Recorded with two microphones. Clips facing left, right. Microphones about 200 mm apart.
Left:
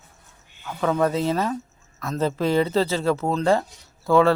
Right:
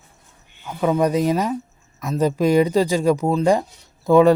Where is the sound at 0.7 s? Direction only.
15° right (ahead or behind).